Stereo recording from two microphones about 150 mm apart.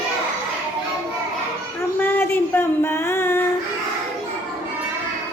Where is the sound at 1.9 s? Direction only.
15° left (ahead or behind).